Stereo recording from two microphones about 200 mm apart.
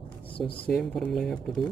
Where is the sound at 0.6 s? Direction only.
5° left (ahead or behind).